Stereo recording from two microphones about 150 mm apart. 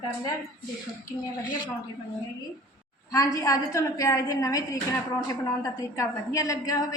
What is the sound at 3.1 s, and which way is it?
A woman's voice, 25° left (ahead or behind).